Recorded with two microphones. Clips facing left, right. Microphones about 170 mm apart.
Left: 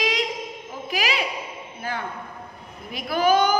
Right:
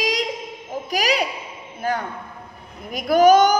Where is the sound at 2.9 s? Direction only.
45° right (ahead or behind).